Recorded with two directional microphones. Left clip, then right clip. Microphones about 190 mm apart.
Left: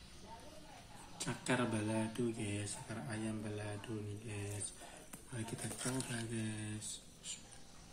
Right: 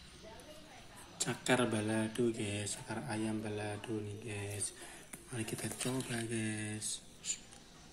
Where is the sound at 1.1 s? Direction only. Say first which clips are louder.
Right 5 dB; 5° right (ahead or behind).